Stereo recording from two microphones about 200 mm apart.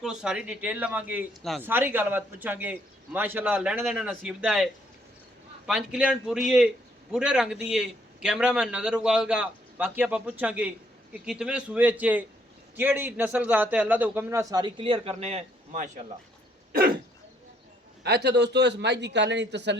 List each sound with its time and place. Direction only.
0.0 s a man's voice: 5° right (ahead or behind); by 15.9 s 35° right (ahead or behind)
16.7 s a sound: 50° right (ahead or behind)
18.0 s a man's voice: 55° right (ahead or behind)